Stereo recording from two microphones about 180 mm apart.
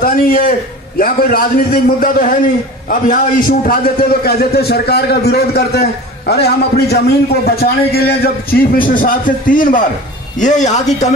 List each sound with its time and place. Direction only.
0.0 s a man's voice: 55° left (ahead or behind)